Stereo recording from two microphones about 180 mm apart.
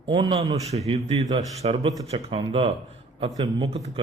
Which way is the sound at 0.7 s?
35° right (ahead or behind).